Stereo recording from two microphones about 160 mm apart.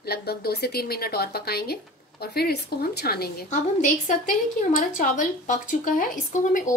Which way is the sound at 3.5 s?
50° left (ahead or behind).